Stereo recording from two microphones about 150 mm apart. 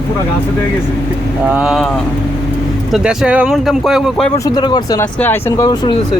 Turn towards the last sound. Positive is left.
turn(degrees=30)  # may be behind; listen again after turning